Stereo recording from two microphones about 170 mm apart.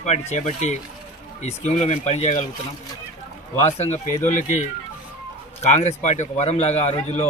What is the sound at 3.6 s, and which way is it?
A man's voice, 40° left (ahead or behind).